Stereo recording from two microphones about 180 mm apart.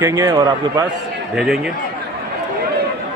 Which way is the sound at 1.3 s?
5° right (ahead or behind).